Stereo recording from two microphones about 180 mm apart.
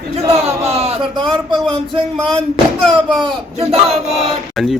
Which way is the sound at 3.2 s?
35° right (ahead or behind).